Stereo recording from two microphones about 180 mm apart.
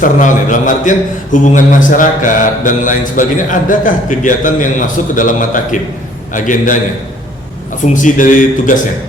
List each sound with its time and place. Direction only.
0.0 s a man's voice: 45° left (ahead or behind)
7.9 s a man's voice: 45° left (ahead or behind)